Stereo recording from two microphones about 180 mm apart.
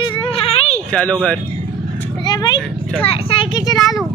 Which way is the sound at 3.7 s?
Centre (ahead or behind).